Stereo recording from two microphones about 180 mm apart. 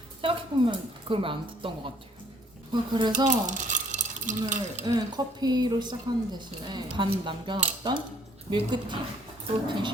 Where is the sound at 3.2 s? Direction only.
45° right (ahead or behind).